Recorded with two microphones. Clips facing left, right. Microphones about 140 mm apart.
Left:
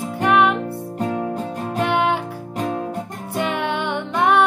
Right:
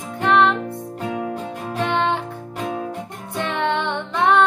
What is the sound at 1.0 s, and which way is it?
Music, 40° left (ahead or behind).